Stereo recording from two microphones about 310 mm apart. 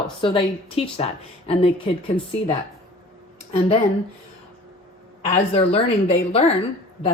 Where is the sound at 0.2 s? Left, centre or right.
Centre.